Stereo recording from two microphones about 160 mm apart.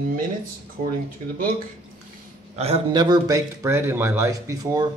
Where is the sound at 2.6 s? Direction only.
40° right (ahead or behind).